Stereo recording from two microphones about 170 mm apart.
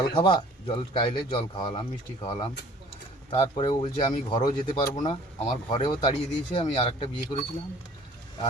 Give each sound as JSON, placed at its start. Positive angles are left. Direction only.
{"t": 0.0, "sound": "a man's voice", "side_deg": 30}